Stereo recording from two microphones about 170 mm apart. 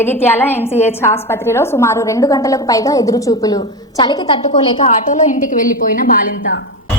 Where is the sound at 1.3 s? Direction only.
15° left (ahead or behind).